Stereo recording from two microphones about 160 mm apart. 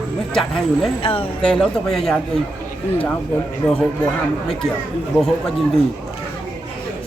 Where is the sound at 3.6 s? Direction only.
Centre (ahead or behind).